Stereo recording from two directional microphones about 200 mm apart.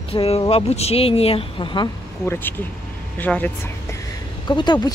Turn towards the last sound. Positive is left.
turn(degrees=20)  # may be behind; listen again after turning